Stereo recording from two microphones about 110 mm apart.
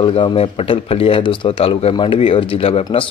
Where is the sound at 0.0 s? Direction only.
50° left (ahead or behind).